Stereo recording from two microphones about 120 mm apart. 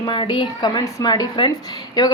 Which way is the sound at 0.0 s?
40° left (ahead or behind).